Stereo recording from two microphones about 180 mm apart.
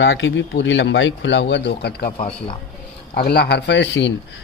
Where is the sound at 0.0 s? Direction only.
90° left; by 2.1 s 60° left (ahead or behind).